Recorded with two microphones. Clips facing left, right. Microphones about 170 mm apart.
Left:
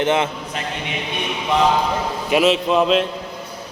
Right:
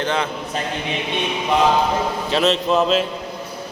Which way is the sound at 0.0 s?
20° left (ahead or behind).